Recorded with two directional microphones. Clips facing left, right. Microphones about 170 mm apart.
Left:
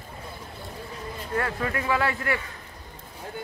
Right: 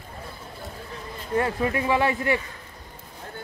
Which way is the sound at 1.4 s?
20° right (ahead or behind).